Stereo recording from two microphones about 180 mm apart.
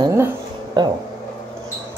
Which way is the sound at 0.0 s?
15° right (ahead or behind).